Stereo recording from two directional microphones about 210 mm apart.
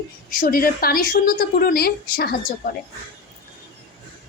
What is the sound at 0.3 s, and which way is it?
A woman's voice, 40° left (ahead or behind).